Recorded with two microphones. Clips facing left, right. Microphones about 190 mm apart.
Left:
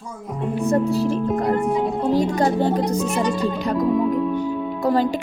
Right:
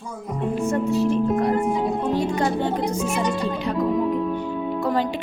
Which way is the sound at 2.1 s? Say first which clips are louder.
Left 3 dB; 40° left (ahead or behind).